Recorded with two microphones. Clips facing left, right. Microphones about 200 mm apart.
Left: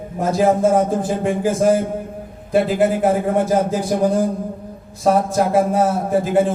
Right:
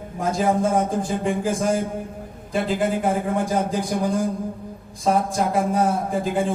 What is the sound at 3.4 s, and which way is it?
Speech, 5° left (ahead or behind).